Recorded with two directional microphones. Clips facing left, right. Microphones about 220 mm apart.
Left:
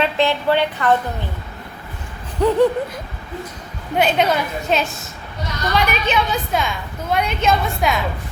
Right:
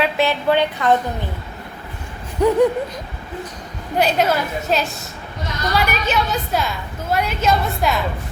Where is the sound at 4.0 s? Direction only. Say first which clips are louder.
Even; centre (ahead or behind).